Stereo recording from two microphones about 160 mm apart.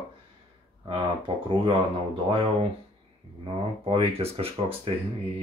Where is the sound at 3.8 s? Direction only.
35° right (ahead or behind).